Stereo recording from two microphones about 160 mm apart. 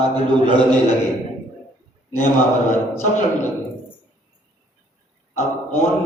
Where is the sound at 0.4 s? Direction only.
30° right (ahead or behind).